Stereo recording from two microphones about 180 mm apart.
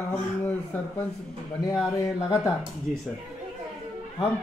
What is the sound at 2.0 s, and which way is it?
Speech, 20° left (ahead or behind).